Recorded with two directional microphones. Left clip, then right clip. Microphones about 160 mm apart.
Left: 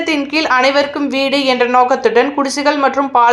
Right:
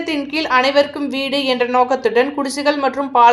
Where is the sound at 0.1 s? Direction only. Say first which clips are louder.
Left 3 dB; 25° left (ahead or behind).